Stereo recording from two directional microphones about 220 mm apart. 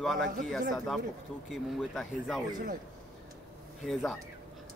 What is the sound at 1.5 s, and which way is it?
Speech, centre (ahead or behind).